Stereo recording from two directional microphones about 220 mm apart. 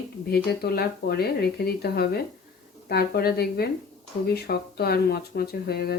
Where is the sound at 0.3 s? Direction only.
45° left (ahead or behind).